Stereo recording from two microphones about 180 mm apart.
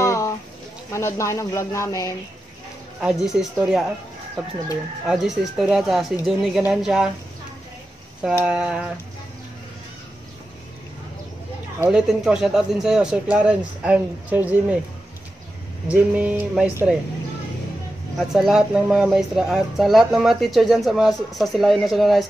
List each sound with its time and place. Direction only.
0.0 s a sound: 15° left (ahead or behind)
0.9 s speech: 15° left (ahead or behind)
3.0 s speech: 5° right (ahead or behind)
5.0 s speech: centre (ahead or behind)
8.5 s speech: 5° right (ahead or behind)
11.8 s speech: 5° right (ahead or behind)
15.9 s speech: 5° right (ahead or behind)
18.3 s speech: 5° right (ahead or behind)